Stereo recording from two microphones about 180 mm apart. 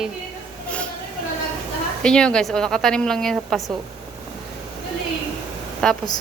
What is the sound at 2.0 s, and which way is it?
A woman's voice, 5° left (ahead or behind).